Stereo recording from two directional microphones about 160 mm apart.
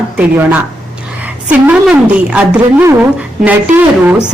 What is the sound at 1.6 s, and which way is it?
Speech, 10° right (ahead or behind).